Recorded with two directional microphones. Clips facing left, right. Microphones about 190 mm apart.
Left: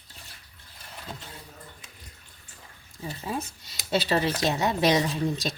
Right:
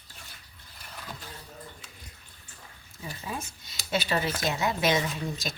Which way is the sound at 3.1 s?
35° left (ahead or behind).